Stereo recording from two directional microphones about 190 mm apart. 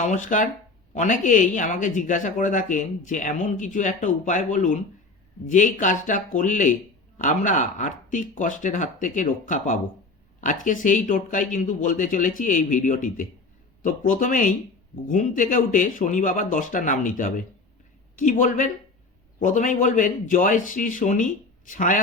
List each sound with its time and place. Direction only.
0.0 s speech: 40° left (ahead or behind)